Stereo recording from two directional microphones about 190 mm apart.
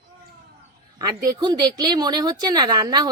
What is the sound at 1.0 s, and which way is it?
Speech, 20° right (ahead or behind).